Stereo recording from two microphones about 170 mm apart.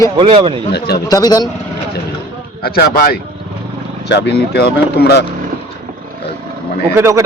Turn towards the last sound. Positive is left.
turn(degrees=-15)  # may be behind; listen again after turning